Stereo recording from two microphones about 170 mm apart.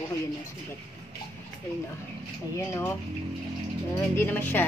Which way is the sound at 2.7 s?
10° left (ahead or behind).